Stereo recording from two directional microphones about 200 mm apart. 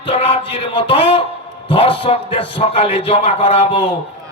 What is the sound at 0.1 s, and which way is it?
Music, 30° left (ahead or behind).